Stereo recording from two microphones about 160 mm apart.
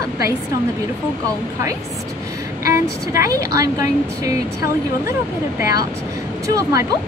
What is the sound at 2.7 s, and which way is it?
Speech, 20° right (ahead or behind).